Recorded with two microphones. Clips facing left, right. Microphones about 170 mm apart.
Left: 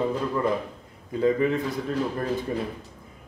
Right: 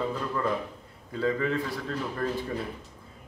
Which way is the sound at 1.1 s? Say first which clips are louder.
Left 5 dB; 20° left (ahead or behind).